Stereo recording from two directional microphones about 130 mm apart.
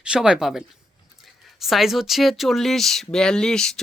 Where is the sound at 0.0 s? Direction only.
5° right (ahead or behind).